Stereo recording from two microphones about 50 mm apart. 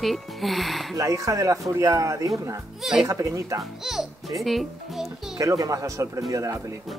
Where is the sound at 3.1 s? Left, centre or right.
Right.